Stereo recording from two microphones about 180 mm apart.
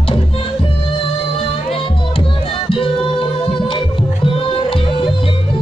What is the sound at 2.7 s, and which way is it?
Music, 30° left (ahead or behind).